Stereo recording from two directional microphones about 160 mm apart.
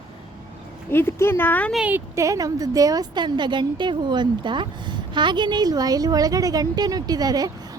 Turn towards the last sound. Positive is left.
turn(degrees=-25)  # may be behind; listen again after turning